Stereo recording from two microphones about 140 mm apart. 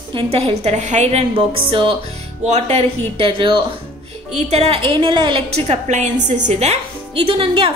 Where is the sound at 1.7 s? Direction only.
40° right (ahead or behind).